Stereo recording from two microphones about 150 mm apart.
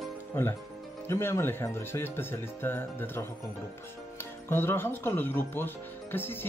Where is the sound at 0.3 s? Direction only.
15° left (ahead or behind).